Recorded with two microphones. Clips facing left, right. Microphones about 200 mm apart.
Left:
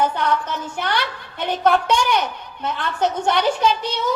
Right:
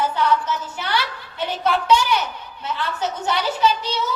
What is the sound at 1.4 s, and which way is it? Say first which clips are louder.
A woman's voice: left 4 dB; 50° left (ahead or behind).